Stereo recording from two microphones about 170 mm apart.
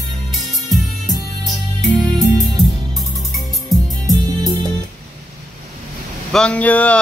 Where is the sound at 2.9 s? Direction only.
Centre (ahead or behind).